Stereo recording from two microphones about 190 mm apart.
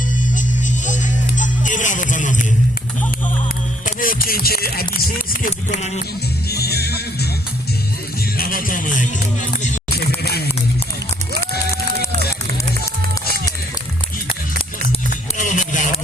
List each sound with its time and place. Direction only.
1.4 s music: 40° left (ahead or behind)
3.8 s speech: 45° left (ahead or behind)
5.5 s speech: 40° left (ahead or behind)
6.5 s music: 55° left (ahead or behind)
8.4 s speech: 45° left (ahead or behind)
10.2 s a sound: 55° left (ahead or behind)
15.1 s a sound: 40° left (ahead or behind)